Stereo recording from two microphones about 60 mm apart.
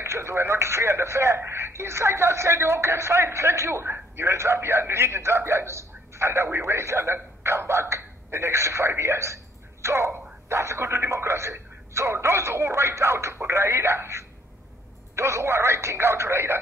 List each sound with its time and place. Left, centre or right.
0.0 s a man's voice: right